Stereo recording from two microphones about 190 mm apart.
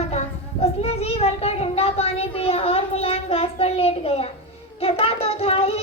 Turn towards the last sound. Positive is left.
turn(degrees=30)  # may be behind; listen again after turning